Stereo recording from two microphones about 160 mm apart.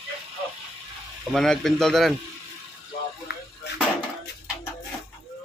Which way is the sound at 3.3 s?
90° left.